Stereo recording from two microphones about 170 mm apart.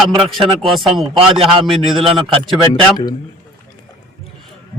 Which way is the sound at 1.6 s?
Centre (ahead or behind).